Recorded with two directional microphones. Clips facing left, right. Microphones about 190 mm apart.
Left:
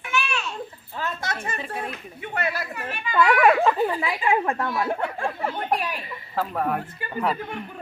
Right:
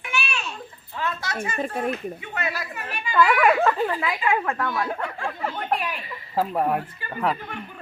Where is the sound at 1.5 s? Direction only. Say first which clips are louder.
Right 6 dB; 50° right (ahead or behind).